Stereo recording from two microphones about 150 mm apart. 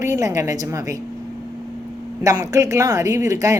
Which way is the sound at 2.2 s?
25° right (ahead or behind).